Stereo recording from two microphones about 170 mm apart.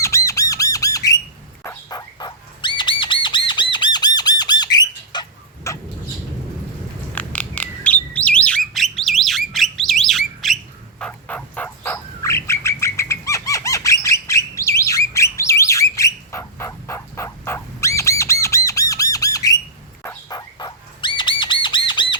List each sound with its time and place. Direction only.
0.0 s squawk: 15° left (ahead or behind)
1.6 s bird: 15° left (ahead or behind)
7.2 s bird: 10° left (ahead or behind)
19.1 s squawk: 20° left (ahead or behind)
20.3 s bird: 25° left (ahead or behind)